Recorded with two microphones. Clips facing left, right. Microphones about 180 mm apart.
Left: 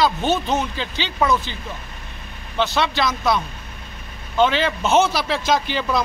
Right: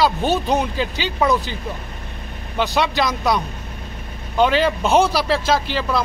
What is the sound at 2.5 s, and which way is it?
Speech, 15° right (ahead or behind).